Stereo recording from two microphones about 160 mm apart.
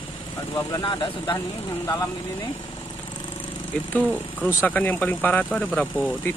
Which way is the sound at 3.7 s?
10° left (ahead or behind).